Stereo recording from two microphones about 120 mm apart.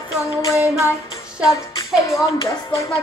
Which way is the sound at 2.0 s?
25° left (ahead or behind).